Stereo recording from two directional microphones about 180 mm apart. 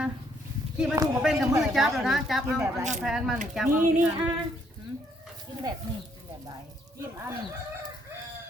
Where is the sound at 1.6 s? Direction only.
Centre (ahead or behind).